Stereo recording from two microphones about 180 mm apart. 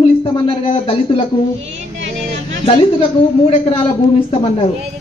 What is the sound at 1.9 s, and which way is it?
Vehicle, 85° right.